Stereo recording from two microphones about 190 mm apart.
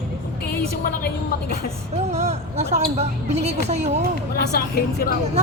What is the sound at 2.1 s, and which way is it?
Speech, 35° right (ahead or behind).